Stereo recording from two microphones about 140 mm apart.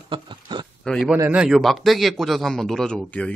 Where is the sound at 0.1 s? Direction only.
35° right (ahead or behind).